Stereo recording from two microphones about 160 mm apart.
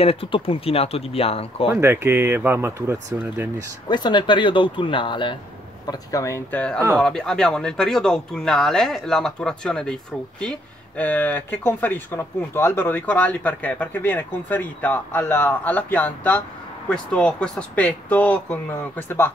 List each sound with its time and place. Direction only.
0.0 s speech: 35° left (ahead or behind)
1.7 s speech: 15° right (ahead or behind)
3.9 s speech: 30° left (ahead or behind)
5.9 s speech: 20° left (ahead or behind)